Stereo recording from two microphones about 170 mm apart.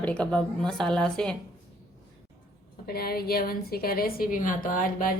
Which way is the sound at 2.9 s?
65° left (ahead or behind).